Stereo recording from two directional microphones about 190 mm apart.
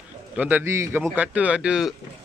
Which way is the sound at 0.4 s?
10° right (ahead or behind).